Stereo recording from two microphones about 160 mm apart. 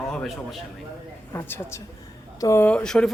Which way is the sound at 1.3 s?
15° left (ahead or behind).